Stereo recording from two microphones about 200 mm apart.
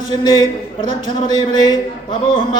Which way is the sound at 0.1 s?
20° left (ahead or behind).